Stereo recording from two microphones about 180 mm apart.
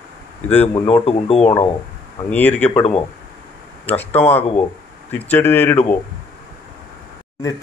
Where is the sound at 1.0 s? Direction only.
35° left (ahead or behind).